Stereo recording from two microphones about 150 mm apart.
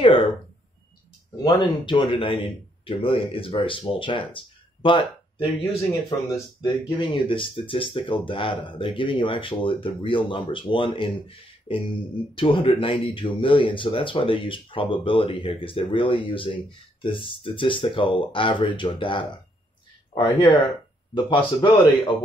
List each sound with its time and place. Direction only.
0.0 s speech: 35° left (ahead or behind)
1.3 s speech: 30° left (ahead or behind)
5.9 s speech: 25° left (ahead or behind)